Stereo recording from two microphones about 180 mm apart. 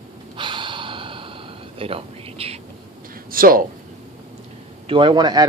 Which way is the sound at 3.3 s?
50° right (ahead or behind).